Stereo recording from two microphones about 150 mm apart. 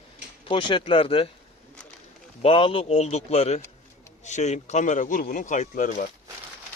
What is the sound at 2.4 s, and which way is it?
A man's voice, 35° left (ahead or behind).